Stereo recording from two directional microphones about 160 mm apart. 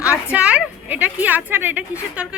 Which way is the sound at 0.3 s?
10° right (ahead or behind).